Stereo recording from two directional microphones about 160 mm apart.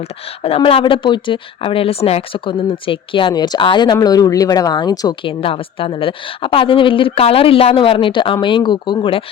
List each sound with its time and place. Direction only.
0.0 s speech: 35° left (ahead or behind)